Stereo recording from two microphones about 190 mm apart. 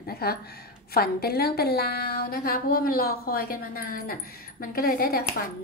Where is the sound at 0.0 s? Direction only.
55° left (ahead or behind).